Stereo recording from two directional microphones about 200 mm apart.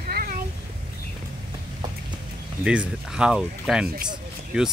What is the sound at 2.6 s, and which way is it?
Speech, 5° right (ahead or behind).